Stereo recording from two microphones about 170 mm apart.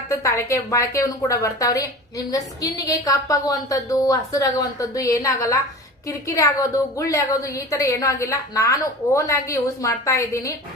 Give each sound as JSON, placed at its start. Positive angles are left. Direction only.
{"t": 0.1, "sound": "a woman's voice", "side_deg": 15}